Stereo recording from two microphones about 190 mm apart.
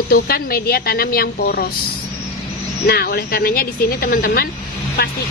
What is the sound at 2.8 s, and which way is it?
A woman's voice, 55° left (ahead or behind).